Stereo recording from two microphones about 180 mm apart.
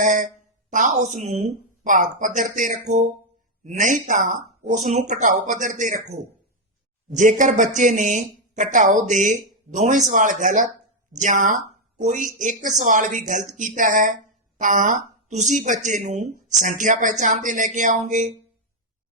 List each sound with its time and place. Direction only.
0.0 s speech: 45° right (ahead or behind)